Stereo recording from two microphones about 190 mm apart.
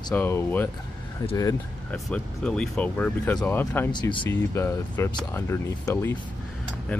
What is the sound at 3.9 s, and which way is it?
Speech, 25° left (ahead or behind).